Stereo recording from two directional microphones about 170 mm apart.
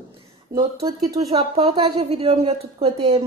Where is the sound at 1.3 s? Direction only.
35° right (ahead or behind).